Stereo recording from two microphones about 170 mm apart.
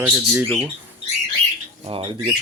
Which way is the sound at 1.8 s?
30° right (ahead or behind).